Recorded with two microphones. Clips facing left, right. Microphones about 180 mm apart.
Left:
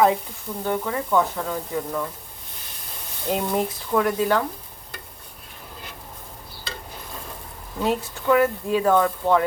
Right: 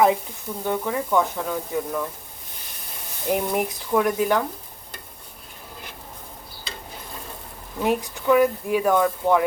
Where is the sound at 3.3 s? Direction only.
15° right (ahead or behind).